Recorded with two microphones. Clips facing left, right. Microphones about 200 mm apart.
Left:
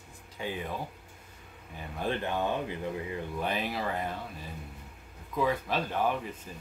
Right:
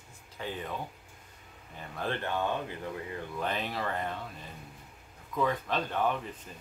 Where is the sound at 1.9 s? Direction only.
15° left (ahead or behind).